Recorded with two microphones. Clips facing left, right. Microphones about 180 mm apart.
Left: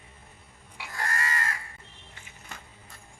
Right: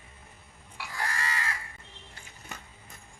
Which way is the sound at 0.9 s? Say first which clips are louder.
Left 2 dB; 45° left (ahead or behind).